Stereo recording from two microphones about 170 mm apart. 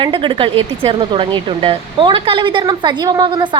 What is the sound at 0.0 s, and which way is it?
Speech, 30° right (ahead or behind).